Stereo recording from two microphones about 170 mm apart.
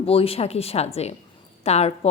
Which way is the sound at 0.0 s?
35° left (ahead or behind).